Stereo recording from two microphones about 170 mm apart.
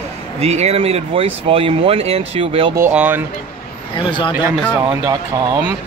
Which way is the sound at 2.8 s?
10° right (ahead or behind).